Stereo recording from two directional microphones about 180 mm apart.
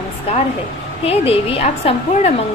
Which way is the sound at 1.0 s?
35° left (ahead or behind).